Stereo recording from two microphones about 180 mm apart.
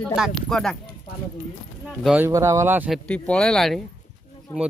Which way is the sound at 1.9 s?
5° right (ahead or behind).